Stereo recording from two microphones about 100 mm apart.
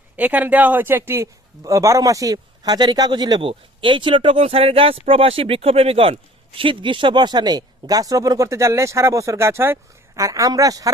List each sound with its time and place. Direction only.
0.2 s a man's voice: 15° right (ahead or behind); by 3.4 s 45° right (ahead or behind)
3.4 s speech: 60° right (ahead or behind)
6.6 s a man's voice: 55° right (ahead or behind); by 10.9 s 35° right (ahead or behind)